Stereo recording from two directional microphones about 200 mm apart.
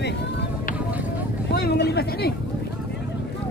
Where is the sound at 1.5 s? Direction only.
55° left (ahead or behind).